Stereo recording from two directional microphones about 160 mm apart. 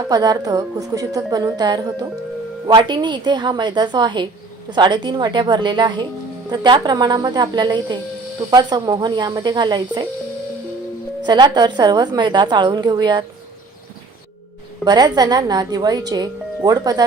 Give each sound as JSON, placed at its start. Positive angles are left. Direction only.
{"t": 0.1, "sound": "speech", "side_deg": -25}
{"t": 11.3, "sound": "speech", "side_deg": -25}
{"t": 14.8, "sound": "speech", "side_deg": -25}